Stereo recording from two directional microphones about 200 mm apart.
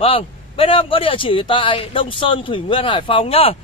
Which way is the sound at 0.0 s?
30° left (ahead or behind).